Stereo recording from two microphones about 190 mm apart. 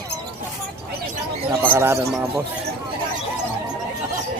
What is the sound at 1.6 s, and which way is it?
Speech, 10° right (ahead or behind).